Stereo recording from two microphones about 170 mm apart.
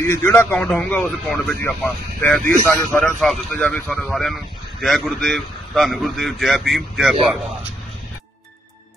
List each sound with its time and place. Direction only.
0.0 s speech: 15° left (ahead or behind)
2.6 s speech: 15° left (ahead or behind)
3.0 s a man's voice: centre (ahead or behind)